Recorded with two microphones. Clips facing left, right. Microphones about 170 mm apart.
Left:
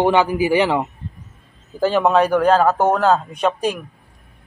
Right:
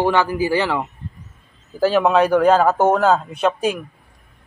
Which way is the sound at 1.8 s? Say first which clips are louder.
Even; centre (ahead or behind).